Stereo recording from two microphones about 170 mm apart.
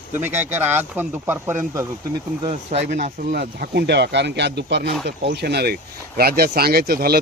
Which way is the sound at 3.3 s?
75° right (ahead or behind).